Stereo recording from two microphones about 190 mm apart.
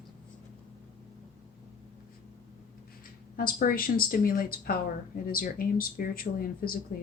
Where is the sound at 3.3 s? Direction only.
50° left (ahead or behind).